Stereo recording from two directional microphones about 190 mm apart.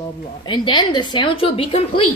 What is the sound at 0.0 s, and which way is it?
Speech, 25° left (ahead or behind).